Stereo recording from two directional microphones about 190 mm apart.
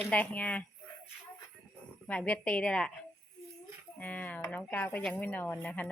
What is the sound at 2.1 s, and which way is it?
Speech, 10° left (ahead or behind).